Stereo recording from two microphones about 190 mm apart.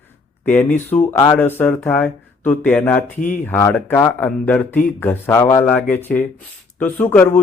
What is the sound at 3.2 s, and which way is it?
Speech, 40° left (ahead or behind).